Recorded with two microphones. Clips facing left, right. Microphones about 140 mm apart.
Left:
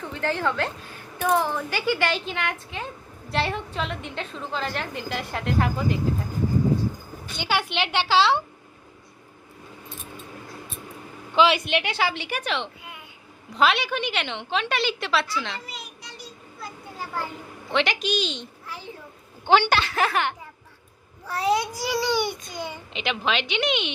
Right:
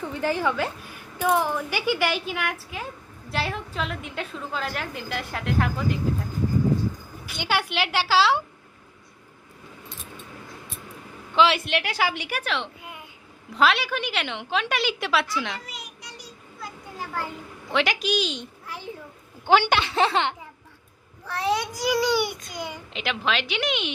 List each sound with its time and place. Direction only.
0.0 s a woman's voice: 10° right (ahead or behind)
7.3 s a woman's voice: 10° right (ahead or behind)
11.3 s a woman's voice: centre (ahead or behind)
12.0 s a woman's voice: 10° right (ahead or behind)
17.7 s a woman's voice: 5° right (ahead or behind)
19.5 s a woman's voice: 10° right (ahead or behind)
21.2 s a child's voice: 10° left (ahead or behind)
22.2 s a woman's voice: 10° right (ahead or behind)
22.9 s a woman's voice: centre (ahead or behind)